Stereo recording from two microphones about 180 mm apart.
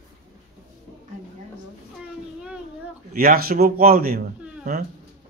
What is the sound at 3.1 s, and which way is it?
Speech, 55° right (ahead or behind).